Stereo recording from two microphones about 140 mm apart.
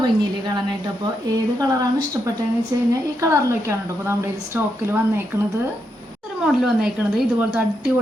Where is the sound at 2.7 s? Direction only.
20° right (ahead or behind).